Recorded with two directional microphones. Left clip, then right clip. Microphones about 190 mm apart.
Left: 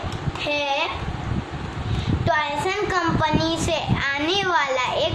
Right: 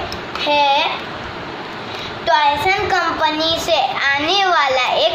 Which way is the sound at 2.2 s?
20° left (ahead or behind).